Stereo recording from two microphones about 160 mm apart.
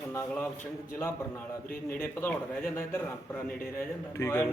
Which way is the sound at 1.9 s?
15° left (ahead or behind).